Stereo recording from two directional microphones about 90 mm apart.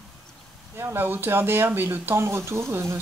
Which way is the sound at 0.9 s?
25° right (ahead or behind).